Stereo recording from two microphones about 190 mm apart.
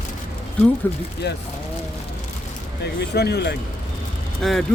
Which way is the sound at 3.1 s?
60° left (ahead or behind).